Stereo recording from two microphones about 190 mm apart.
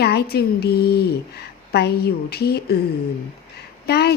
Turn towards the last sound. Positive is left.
turn(degrees=55)  # may be behind; listen again after turning